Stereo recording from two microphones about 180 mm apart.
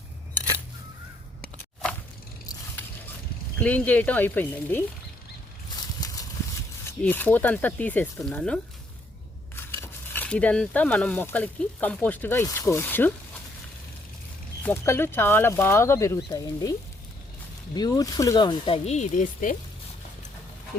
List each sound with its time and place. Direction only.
3.6 s speech: 10° left (ahead or behind)
6.0 s clip-clop: 20° left (ahead or behind)
7.0 s speech: 10° left (ahead or behind)
14.6 s speech: 10° left (ahead or behind)
17.7 s speech: 20° left (ahead or behind); by 19.5 s 45° left (ahead or behind)